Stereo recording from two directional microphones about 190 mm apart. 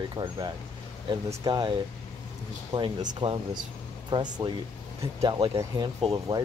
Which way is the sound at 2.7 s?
25° right (ahead or behind).